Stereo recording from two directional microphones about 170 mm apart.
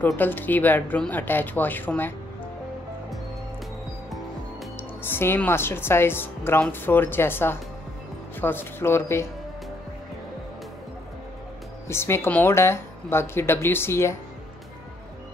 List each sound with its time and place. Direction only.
0.0 s a woman's voice: 10° left (ahead or behind)
5.0 s a woman's voice: 15° left (ahead or behind)
11.9 s a woman's voice: 15° left (ahead or behind)